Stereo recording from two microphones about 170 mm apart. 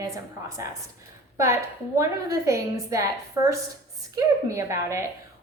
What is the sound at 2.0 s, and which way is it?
A woman's voice, 20° right (ahead or behind).